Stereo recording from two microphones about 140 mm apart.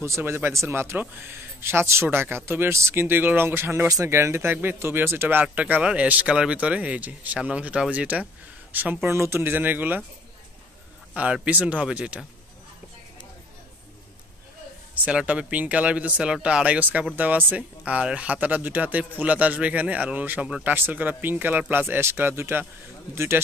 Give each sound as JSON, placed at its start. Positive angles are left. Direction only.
{"t": 0.0, "sound": "speech", "side_deg": -20}
{"t": 11.1, "sound": "speech", "side_deg": -10}
{"t": 15.0, "sound": "speech", "side_deg": -10}